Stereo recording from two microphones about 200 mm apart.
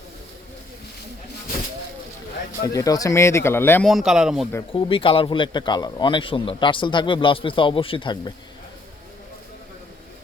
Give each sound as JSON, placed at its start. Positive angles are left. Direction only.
{"t": 2.7, "sound": "speech", "side_deg": 15}
{"t": 3.8, "sound": "speech", "side_deg": 0}
{"t": 4.7, "sound": "a man's voice", "side_deg": 25}